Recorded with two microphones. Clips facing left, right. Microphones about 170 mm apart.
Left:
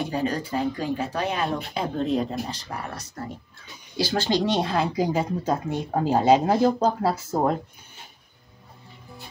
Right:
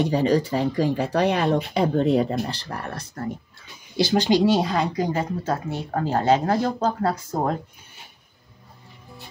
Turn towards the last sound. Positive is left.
turn(degrees=5)  # may be behind; listen again after turning